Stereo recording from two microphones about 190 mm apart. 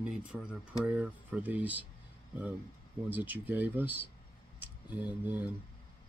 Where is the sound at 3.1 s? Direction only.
10° right (ahead or behind).